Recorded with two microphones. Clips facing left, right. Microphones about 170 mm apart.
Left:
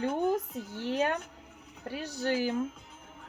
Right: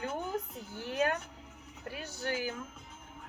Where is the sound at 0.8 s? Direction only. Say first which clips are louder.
Left 2 dB; 30° left (ahead or behind).